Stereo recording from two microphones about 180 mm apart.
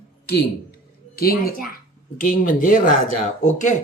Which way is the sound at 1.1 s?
55° left (ahead or behind).